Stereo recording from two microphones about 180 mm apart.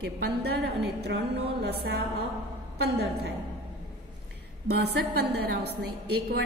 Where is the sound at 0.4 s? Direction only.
65° right (ahead or behind).